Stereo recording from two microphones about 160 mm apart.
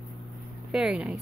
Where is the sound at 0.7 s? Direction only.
5° right (ahead or behind).